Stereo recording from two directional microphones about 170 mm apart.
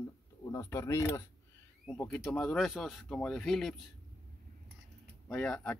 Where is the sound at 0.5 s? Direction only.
15° left (ahead or behind); by 3.8 s centre (ahead or behind).